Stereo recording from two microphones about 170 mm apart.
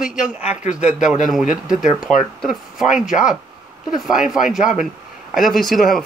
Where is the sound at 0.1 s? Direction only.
50° left (ahead or behind).